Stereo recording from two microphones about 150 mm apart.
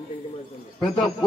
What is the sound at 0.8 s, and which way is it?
Speech, 5° left (ahead or behind).